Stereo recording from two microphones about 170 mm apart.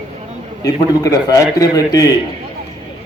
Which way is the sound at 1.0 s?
20° left (ahead or behind).